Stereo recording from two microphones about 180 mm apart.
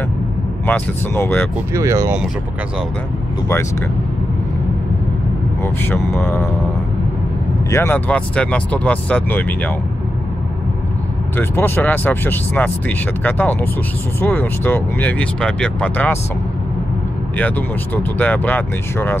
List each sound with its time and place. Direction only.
0.7 s speech: 10° left (ahead or behind)
1.7 s speech: 15° right (ahead or behind)
5.6 s speech: 10° left (ahead or behind)
7.7 s speech: 10° left (ahead or behind)
11.3 s speech: 10° left (ahead or behind)
17.4 s speech: 10° left (ahead or behind)